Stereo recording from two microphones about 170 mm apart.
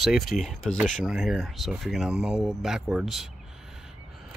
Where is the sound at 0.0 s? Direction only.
Centre (ahead or behind).